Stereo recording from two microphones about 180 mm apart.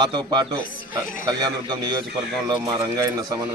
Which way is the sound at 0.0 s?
25° right (ahead or behind).